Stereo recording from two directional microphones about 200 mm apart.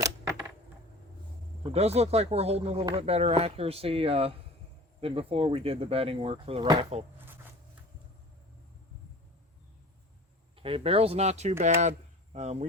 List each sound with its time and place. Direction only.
1.7 s speech: 30° right (ahead or behind)
10.5 s speech: 25° right (ahead or behind)